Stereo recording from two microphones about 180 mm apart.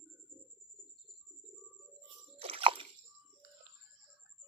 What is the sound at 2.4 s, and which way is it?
Squish, 30° right (ahead or behind).